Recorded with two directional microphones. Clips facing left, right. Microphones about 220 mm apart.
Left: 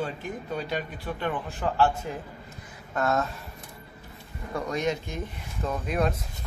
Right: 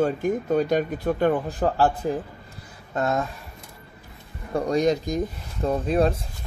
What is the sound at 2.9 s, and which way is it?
Speech, 25° right (ahead or behind).